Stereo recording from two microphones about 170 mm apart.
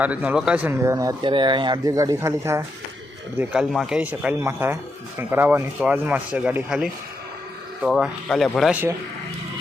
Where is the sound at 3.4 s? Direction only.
Centre (ahead or behind).